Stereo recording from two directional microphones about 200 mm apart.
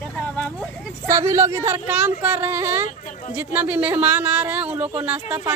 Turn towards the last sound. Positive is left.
turn(degrees=-10)  # may be behind; listen again after turning